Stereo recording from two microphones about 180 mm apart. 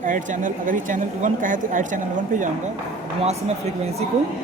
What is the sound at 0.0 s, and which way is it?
Speech, 45° right (ahead or behind).